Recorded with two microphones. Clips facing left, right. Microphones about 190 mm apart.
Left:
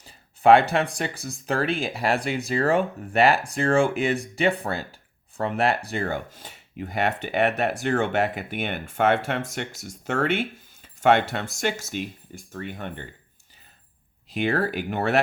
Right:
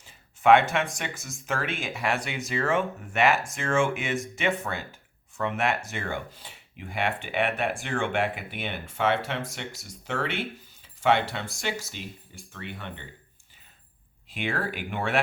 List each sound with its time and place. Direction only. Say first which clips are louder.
0.0 s speech: left 4 dB; 35° left (ahead or behind)
14.3 s speech: left 6 dB; 40° left (ahead or behind)